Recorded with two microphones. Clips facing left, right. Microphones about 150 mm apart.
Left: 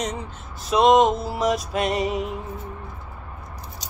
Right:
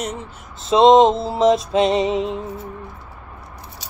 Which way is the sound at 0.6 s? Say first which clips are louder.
Right 5 dB; 25° right (ahead or behind).